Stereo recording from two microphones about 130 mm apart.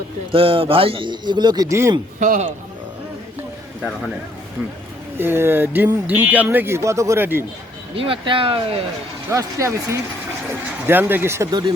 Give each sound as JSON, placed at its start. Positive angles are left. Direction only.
{"t": 0.3, "sound": "a man's voice", "side_deg": -45}
{"t": 2.1, "sound": "a man's voice", "side_deg": -90}
{"t": 5.1, "sound": "speech", "side_deg": -15}
{"t": 7.9, "sound": "speech", "side_deg": -45}
{"t": 9.3, "sound": "speech", "side_deg": -25}